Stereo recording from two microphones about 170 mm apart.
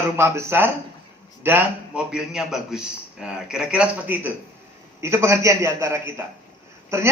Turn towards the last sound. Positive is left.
turn(degrees=-15)  # may be behind; listen again after turning